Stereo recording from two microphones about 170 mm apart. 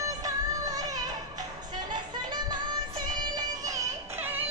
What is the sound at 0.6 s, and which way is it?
Baby cry, 20° right (ahead or behind).